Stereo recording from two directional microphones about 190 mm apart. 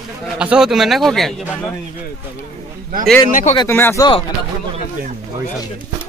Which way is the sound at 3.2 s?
45° left (ahead or behind).